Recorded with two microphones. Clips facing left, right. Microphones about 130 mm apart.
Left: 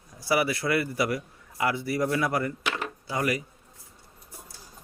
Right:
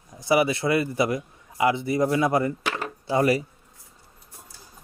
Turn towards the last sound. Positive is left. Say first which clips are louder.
# right 7 dB
turn(degrees=-30)  # may be behind; listen again after turning